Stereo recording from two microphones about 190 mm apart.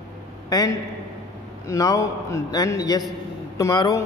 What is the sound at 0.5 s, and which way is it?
A man's voice, 20° left (ahead or behind).